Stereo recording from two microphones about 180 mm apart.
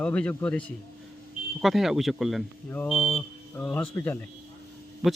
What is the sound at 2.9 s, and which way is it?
Speech, 35° left (ahead or behind).